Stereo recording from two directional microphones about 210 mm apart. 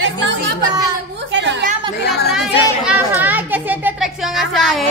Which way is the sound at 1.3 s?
60° right (ahead or behind).